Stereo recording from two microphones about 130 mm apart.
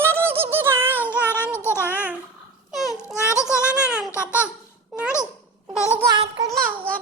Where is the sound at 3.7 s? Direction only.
5° right (ahead or behind).